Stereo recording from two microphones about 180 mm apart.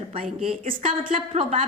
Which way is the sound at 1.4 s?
35° right (ahead or behind).